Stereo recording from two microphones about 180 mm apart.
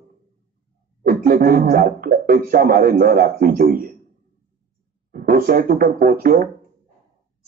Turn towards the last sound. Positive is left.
turn(degrees=-55)  # may be behind; listen again after turning